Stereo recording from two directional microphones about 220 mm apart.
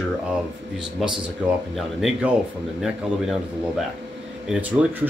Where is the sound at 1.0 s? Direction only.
Centre (ahead or behind).